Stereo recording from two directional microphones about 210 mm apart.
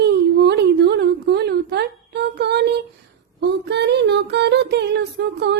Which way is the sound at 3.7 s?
55° right (ahead or behind).